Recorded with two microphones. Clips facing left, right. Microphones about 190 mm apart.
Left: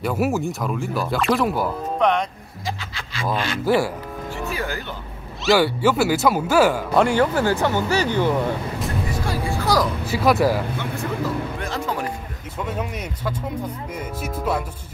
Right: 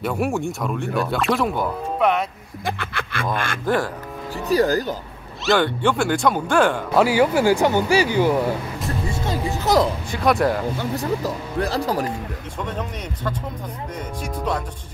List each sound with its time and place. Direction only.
0.0 s speech: centre (ahead or behind)
2.6 s speech: 55° right (ahead or behind)
3.6 s speech: 10° left (ahead or behind)
4.5 s speech: 40° right (ahead or behind)
5.4 s speech: 5° left (ahead or behind)
9.1 s music: 20° right (ahead or behind)
10.1 s speech: 5° left (ahead or behind)
10.8 s speech: 35° right (ahead or behind)
12.5 s speech: 5° left (ahead or behind)